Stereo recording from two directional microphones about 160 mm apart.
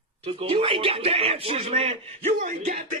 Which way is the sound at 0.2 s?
35° right (ahead or behind).